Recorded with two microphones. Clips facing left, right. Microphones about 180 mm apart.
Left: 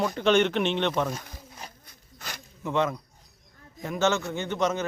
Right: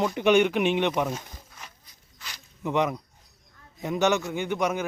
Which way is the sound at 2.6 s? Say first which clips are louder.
Right 1 dB; 15° right (ahead or behind).